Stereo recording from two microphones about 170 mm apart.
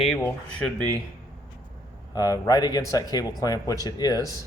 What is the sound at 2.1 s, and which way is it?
Speech, 20° left (ahead or behind).